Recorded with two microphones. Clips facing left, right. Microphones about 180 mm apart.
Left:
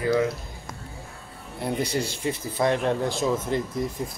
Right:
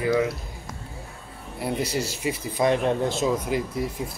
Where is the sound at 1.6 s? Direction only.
5° right (ahead or behind).